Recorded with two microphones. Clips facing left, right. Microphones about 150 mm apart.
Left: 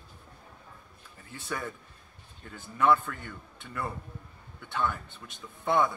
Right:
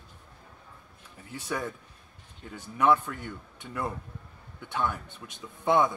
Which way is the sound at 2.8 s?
15° right (ahead or behind).